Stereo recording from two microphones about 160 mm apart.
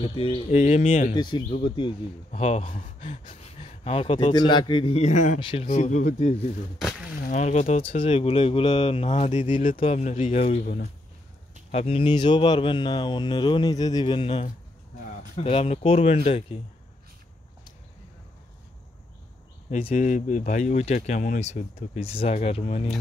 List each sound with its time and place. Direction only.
0.0 s speech: 35° left (ahead or behind)
0.6 s speech: 50° left (ahead or behind)
1.1 s speech: 30° left (ahead or behind)
2.4 s speech: 45° left (ahead or behind)
5.4 s speech: 30° left (ahead or behind)
5.7 s speech: 50° left (ahead or behind)
11.7 s speech: 40° left (ahead or behind)
19.8 s speech: 45° left (ahead or behind)